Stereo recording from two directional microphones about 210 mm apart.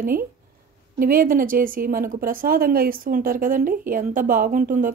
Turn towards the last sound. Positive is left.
turn(degrees=-40)  # may be behind; listen again after turning